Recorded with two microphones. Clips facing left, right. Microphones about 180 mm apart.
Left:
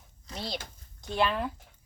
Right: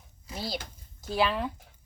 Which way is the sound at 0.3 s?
5° right (ahead or behind).